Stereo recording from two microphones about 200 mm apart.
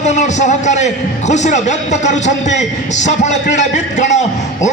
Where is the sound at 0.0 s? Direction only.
35° left (ahead or behind).